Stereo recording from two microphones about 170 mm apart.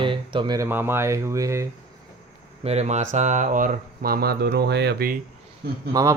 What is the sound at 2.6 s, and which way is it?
Speech, 40° right (ahead or behind).